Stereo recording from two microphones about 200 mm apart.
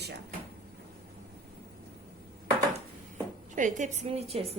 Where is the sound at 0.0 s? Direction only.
55° right (ahead or behind).